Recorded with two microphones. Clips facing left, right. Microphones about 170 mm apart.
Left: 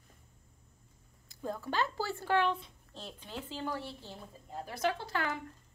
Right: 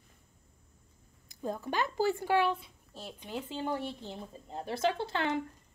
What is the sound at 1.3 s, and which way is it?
A woman's voice, 15° right (ahead or behind).